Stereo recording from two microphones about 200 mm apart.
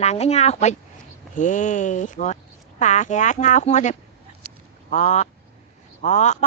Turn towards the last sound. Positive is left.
turn(degrees=35)  # may be behind; listen again after turning